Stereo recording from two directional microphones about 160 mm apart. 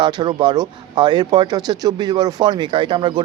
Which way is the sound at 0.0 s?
30° right (ahead or behind).